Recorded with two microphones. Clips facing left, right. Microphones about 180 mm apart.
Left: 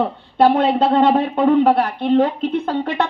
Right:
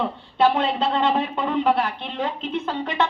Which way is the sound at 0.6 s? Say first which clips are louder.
Left 7 dB; 55° left (ahead or behind).